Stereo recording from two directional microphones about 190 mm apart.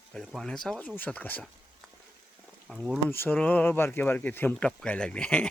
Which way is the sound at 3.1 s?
10° left (ahead or behind).